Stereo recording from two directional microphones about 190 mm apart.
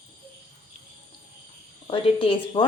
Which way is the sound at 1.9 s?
30° left (ahead or behind).